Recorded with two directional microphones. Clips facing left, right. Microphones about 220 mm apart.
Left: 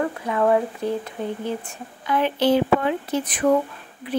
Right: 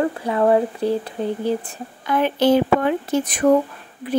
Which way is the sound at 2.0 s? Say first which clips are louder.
Right 3 dB; 45° right (ahead or behind).